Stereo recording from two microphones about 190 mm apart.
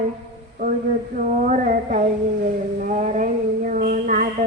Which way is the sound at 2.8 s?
40° right (ahead or behind).